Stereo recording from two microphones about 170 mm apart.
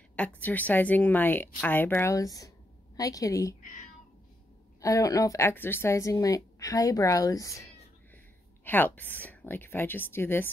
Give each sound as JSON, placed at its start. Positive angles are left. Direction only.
{"t": 0.4, "sound": "a woman's voice", "side_deg": 10}
{"t": 4.8, "sound": "speech", "side_deg": 20}
{"t": 8.6, "sound": "a woman's voice", "side_deg": 10}